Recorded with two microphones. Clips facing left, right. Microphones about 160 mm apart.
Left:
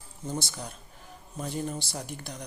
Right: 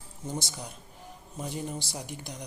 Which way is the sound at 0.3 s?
20° right (ahead or behind).